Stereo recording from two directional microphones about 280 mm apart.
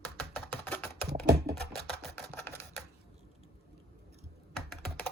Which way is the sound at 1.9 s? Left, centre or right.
Centre.